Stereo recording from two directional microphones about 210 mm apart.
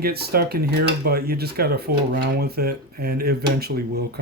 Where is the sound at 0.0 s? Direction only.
50° right (ahead or behind).